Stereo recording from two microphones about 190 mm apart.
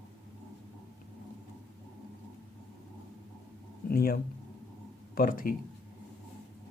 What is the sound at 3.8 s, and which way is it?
Speech, 50° left (ahead or behind).